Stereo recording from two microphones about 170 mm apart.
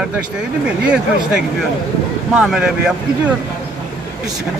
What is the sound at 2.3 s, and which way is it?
Speech, 5° right (ahead or behind).